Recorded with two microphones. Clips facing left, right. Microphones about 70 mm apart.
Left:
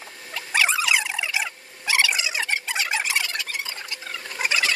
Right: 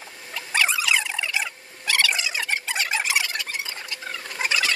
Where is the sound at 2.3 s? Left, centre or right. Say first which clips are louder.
Left 1 dB; centre.